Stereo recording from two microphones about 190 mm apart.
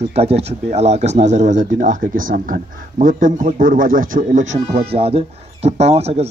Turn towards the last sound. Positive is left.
turn(degrees=-35)  # may be behind; listen again after turning